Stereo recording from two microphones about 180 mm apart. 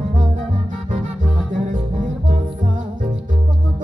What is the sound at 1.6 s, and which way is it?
Music, 45° right (ahead or behind).